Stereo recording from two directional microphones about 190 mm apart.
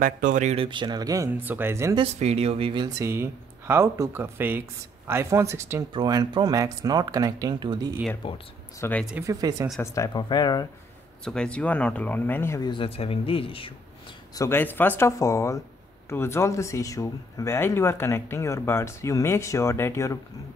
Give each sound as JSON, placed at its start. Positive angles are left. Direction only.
{"t": 0.0, "sound": "speech", "side_deg": -45}
{"t": 2.1, "sound": "speech", "side_deg": -35}
{"t": 8.2, "sound": "speech", "side_deg": 25}
{"t": 8.7, "sound": "speech", "side_deg": 10}
{"t": 9.2, "sound": "speech", "side_deg": -20}
{"t": 9.8, "sound": "speech", "side_deg": 20}
{"t": 11.2, "sound": "speech", "side_deg": 5}
{"t": 14.3, "sound": "speech", "side_deg": 15}